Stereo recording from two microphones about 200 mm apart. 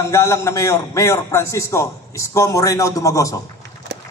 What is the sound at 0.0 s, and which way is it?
A man's voice, 15° left (ahead or behind).